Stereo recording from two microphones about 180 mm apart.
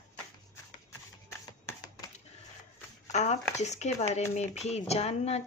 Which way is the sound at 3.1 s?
40° left (ahead or behind).